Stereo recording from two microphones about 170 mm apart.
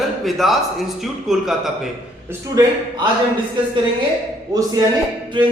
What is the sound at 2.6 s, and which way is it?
Speech, 20° right (ahead or behind).